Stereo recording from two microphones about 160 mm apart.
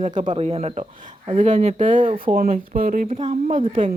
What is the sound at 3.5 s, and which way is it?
Speech, 55° right (ahead or behind).